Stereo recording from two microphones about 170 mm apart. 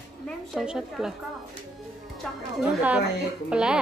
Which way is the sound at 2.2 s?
5° right (ahead or behind).